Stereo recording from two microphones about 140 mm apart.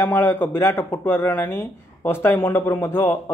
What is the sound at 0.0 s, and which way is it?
A man's voice, 15° left (ahead or behind).